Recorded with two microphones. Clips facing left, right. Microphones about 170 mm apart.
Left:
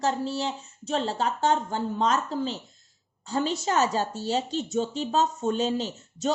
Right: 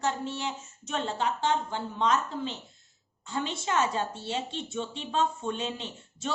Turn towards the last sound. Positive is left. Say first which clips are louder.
# left 7 dB
turn(degrees=40)  # may be behind; listen again after turning